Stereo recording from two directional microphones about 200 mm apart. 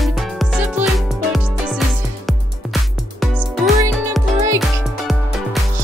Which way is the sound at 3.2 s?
Centre (ahead or behind).